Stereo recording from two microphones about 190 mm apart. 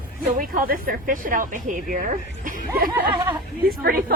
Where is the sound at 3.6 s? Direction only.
50° right (ahead or behind).